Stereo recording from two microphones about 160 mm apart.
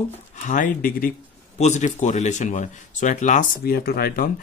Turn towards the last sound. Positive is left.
turn(degrees=70)  # may be behind; listen again after turning